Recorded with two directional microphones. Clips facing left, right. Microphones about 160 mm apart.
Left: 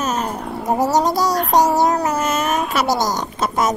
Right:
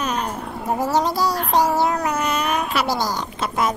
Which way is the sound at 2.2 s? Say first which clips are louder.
Left 2 dB; 45° left (ahead or behind).